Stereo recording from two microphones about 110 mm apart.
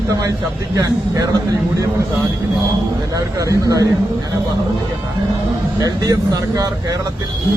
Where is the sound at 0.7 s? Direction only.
35° right (ahead or behind).